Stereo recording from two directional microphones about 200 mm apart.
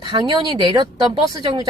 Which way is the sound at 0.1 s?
20° right (ahead or behind).